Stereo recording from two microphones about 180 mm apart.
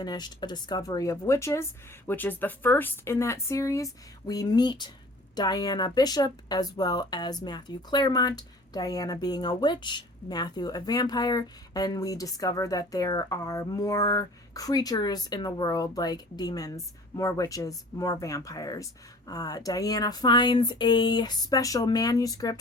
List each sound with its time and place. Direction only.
0.0 s a woman's voice: 25° left (ahead or behind)